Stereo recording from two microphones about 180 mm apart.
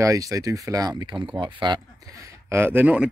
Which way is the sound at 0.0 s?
20° right (ahead or behind).